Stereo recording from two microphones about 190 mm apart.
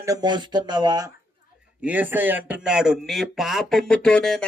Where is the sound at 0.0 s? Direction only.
20° right (ahead or behind).